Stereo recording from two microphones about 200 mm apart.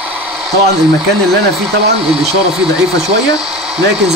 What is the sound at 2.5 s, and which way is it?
Speech, 5° right (ahead or behind).